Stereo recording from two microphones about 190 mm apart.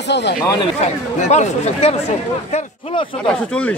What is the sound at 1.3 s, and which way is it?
Speech, 35° left (ahead or behind).